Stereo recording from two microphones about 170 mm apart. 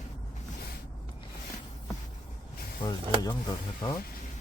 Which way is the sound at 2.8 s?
25° left (ahead or behind).